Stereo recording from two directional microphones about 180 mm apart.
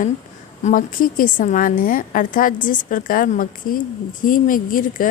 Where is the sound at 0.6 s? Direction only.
50° left (ahead or behind).